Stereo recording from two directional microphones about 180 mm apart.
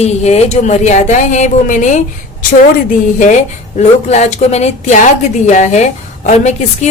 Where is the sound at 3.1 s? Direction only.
40° left (ahead or behind).